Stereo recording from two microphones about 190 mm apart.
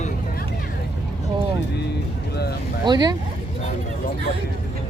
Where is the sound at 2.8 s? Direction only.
20° right (ahead or behind).